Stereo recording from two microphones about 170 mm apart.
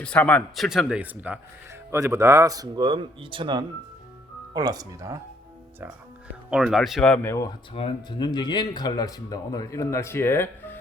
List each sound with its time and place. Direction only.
0.0 s speech: 5° left (ahead or behind); by 5.1 s 20° right (ahead or behind)
6.5 s speech: 5° right (ahead or behind); by 7.5 s 15° left (ahead or behind)
7.7 s speech: 30° left (ahead or behind); by 10.8 s 15° left (ahead or behind)